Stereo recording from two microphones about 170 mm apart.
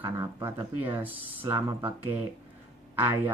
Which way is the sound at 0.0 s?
15° right (ahead or behind).